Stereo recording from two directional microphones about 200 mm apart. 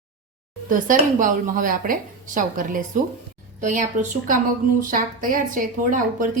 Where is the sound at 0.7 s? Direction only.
40° right (ahead or behind).